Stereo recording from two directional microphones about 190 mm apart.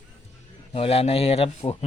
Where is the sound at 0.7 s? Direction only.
30° left (ahead or behind).